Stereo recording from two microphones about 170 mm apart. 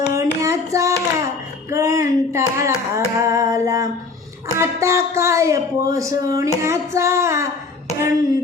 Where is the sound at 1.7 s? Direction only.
20° right (ahead or behind).